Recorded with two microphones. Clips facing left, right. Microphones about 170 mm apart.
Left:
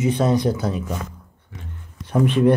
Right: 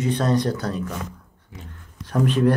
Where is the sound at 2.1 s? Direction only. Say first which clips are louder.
Left 3 dB; 20° left (ahead or behind).